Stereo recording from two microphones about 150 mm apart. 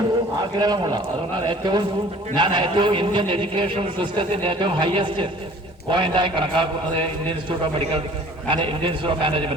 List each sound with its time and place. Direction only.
0.6 s a man's voice: 25° right (ahead or behind)